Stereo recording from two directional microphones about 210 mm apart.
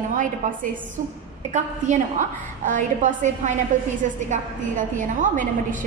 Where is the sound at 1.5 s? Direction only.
35° right (ahead or behind).